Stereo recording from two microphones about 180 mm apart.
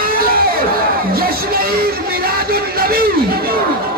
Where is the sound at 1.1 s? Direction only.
55° right (ahead or behind).